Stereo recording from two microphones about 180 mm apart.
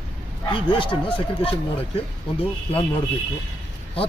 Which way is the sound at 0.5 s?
30° left (ahead or behind).